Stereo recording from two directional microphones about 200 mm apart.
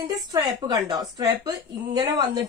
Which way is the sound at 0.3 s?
20° right (ahead or behind).